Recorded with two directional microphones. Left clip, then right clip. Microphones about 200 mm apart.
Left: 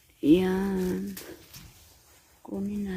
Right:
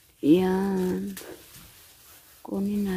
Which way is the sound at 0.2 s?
10° right (ahead or behind).